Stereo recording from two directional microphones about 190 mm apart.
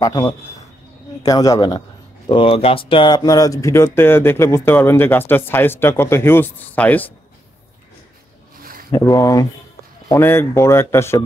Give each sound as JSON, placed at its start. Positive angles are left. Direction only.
{"t": 0.0, "sound": "speech", "side_deg": 20}
{"t": 8.9, "sound": "speech", "side_deg": 20}